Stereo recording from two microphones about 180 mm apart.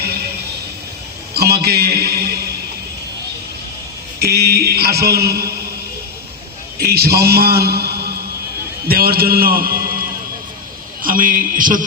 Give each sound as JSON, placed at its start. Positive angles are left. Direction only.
{"t": 1.3, "sound": "a man's voice", "side_deg": -60}
{"t": 4.2, "sound": "a man's voice", "side_deg": -65}
{"t": 6.7, "sound": "a man's voice", "side_deg": -60}
{"t": 11.0, "sound": "a man's voice", "side_deg": -50}